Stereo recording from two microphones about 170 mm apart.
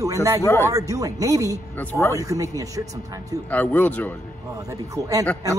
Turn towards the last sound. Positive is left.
turn(degrees=-20)  # may be behind; listen again after turning